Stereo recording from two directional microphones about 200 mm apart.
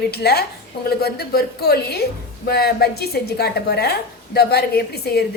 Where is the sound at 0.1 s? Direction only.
55° left (ahead or behind).